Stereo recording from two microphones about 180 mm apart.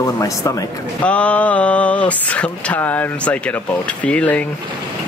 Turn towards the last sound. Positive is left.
turn(degrees=5)  # may be behind; listen again after turning